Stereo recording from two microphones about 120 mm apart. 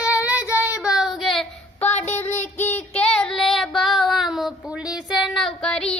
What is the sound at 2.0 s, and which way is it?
Child singing, 15° left (ahead or behind).